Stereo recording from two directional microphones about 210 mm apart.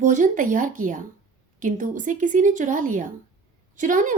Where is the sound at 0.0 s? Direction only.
40° right (ahead or behind).